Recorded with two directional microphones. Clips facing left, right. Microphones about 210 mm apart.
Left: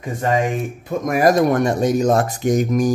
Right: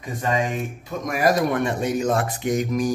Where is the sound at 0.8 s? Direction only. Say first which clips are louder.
Left 5 dB; 50° left (ahead or behind).